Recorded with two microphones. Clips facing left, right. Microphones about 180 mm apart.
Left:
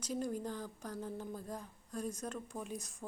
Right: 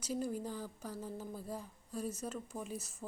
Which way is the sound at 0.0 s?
5° right (ahead or behind).